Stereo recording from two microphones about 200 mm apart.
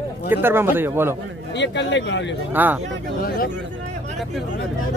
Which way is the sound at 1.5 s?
60° left (ahead or behind).